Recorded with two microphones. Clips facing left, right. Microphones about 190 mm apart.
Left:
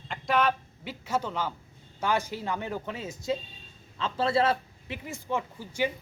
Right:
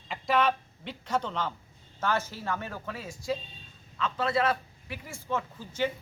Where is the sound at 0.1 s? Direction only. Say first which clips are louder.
Even; centre (ahead or behind).